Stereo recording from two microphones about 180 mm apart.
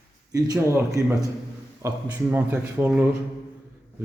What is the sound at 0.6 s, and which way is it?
A man's voice, 15° right (ahead or behind).